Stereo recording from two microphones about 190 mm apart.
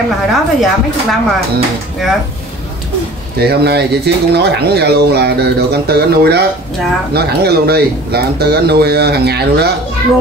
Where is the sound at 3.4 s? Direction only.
60° right (ahead or behind).